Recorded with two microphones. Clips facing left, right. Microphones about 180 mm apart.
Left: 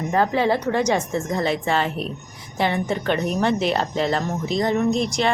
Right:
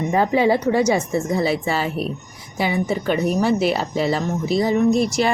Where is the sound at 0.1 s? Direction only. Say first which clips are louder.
Right 2 dB; 10° right (ahead or behind).